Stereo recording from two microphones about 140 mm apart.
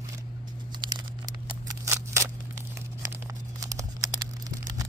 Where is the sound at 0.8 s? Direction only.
30° right (ahead or behind).